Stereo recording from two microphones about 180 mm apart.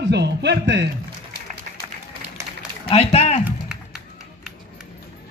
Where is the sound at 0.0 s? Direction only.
70° right (ahead or behind).